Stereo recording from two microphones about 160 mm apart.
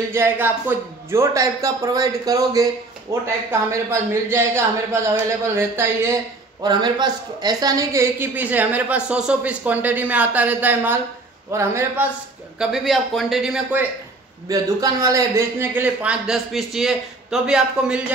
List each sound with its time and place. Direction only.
0.1 s a woman's voice: 15° right (ahead or behind)
6.6 s a woman's voice: 30° right (ahead or behind)
12.5 s a man's voice: centre (ahead or behind)
14.5 s a woman's voice: 20° right (ahead or behind); by 18.0 s 5° right (ahead or behind)